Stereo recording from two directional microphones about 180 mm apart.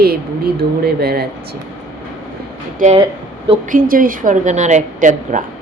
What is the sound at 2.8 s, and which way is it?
Speech, 45° right (ahead or behind).